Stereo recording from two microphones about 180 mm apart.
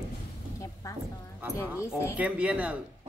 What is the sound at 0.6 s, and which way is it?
Speech, 15° left (ahead or behind).